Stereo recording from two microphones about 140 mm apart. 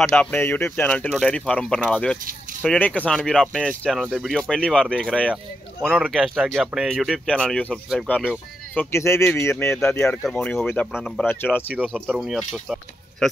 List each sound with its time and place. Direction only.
0.0 s speech: 10° left (ahead or behind)
8.7 s speech: 20° left (ahead or behind)
9.8 s speech: 5° left (ahead or behind)
12.1 s speech: centre (ahead or behind)